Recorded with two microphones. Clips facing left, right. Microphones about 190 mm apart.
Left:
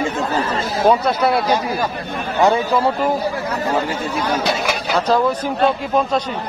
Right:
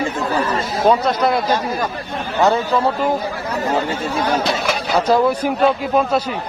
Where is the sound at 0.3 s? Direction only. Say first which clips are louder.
Right 1 dB; 25° left (ahead or behind).